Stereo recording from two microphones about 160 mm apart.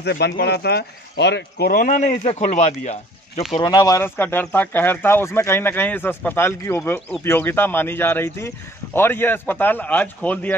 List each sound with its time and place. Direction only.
0.0 s speech: 90° left; by 3.4 s 45° left (ahead or behind)
3.5 s speech: 25° left (ahead or behind); by 10.5 s 10° left (ahead or behind)